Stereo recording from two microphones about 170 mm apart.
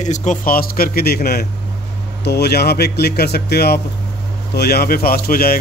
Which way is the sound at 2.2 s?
75° left (ahead or behind).